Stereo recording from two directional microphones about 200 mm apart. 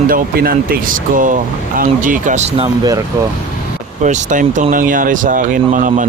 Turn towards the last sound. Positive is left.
turn(degrees=-40)  # may be behind; listen again after turning